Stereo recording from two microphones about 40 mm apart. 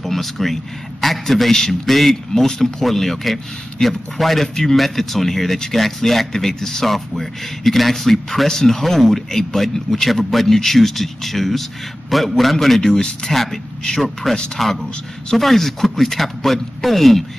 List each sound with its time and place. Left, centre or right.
0.0 s speech: centre
12.8 s speech: centre
13.3 s speech: centre